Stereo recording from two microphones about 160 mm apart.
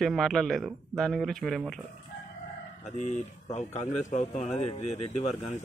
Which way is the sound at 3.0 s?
45° left (ahead or behind).